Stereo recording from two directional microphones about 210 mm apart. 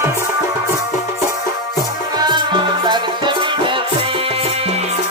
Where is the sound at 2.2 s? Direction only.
20° right (ahead or behind).